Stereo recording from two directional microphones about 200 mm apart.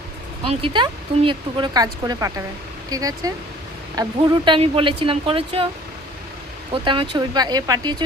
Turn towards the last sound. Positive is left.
turn(degrees=-20)  # may be behind; listen again after turning